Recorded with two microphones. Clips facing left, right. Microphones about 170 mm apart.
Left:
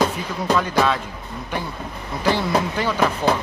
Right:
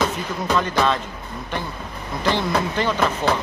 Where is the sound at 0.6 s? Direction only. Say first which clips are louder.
Right 1 dB; 5° left (ahead or behind).